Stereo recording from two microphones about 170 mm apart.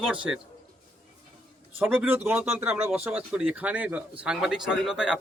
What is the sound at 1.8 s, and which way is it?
Speech, 10° right (ahead or behind).